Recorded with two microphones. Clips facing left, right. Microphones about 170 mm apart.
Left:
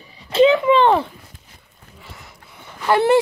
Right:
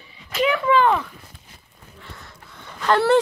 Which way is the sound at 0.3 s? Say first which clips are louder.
Left 6 dB; 25° left (ahead or behind).